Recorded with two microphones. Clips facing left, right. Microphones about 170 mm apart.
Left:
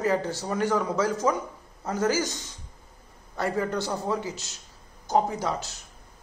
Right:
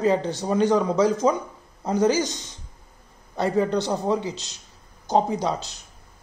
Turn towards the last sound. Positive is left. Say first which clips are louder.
# right 4 dB
turn(degrees=-20)  # may be behind; listen again after turning